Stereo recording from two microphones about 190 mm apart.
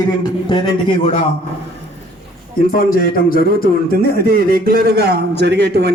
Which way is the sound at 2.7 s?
45° left (ahead or behind).